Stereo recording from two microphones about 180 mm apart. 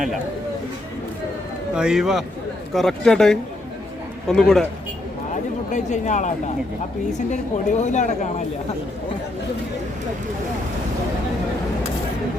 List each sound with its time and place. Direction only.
1.7 s a man's voice: 5° right (ahead or behind)
5.3 s speech: 40° left (ahead or behind)